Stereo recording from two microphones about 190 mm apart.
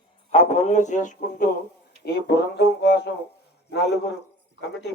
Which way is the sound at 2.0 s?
60° left (ahead or behind).